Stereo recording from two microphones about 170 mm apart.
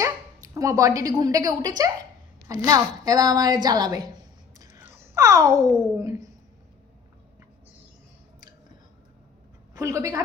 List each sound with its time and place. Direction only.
0.0 s a woman's voice: 20° right (ahead or behind)
4.5 s a sound: 20° right (ahead or behind)
5.7 s a woman's voice: 20° right (ahead or behind)
9.7 s a woman's voice: 20° right (ahead or behind)